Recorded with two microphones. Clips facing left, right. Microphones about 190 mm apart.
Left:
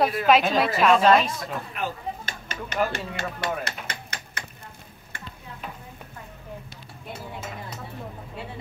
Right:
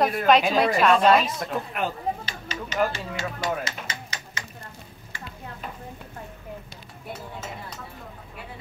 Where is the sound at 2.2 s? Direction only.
55° left (ahead or behind).